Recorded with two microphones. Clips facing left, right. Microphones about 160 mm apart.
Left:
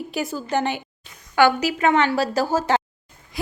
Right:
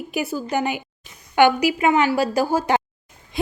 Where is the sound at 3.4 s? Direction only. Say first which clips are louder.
Right 5 dB; 25° right (ahead or behind).